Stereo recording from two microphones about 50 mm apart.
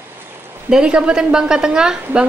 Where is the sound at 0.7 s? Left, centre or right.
Centre.